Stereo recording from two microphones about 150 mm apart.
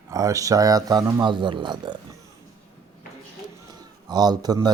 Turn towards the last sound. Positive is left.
turn(degrees=-25)  # may be behind; listen again after turning